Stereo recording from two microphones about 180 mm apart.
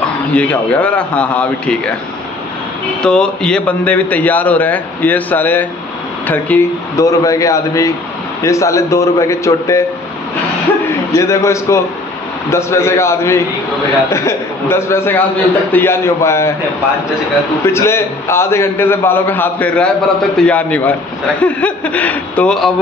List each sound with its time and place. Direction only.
0.3 s a man's voice: 10° left (ahead or behind)
3.0 s a man's voice: 5° left (ahead or behind)
11.1 s a man's voice: 15° left (ahead or behind)
17.6 s a man's voice: 15° left (ahead or behind)